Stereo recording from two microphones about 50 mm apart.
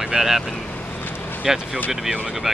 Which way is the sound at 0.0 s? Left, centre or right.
Centre.